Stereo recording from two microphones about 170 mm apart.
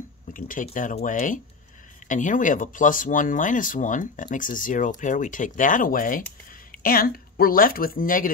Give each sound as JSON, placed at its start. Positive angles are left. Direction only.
{"t": 0.3, "sound": "a woman's voice", "side_deg": 50}